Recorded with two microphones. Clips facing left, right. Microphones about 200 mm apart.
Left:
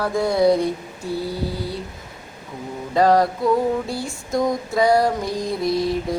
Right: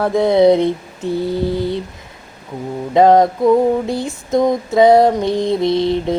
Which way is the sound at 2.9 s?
20° right (ahead or behind).